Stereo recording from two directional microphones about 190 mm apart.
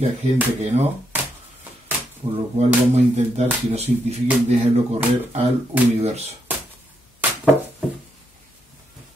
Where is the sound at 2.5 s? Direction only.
35° right (ahead or behind).